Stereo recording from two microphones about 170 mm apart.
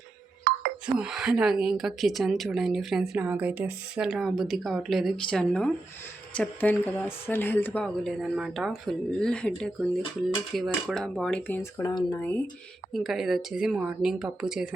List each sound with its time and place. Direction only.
0.5 s music: 55° right (ahead or behind)
0.9 s a woman's voice: 5° right (ahead or behind)
11.8 s speech: 20° left (ahead or behind)
12.9 s a woman's voice: centre (ahead or behind)